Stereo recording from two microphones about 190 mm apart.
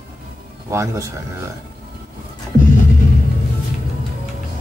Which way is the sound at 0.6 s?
15° right (ahead or behind).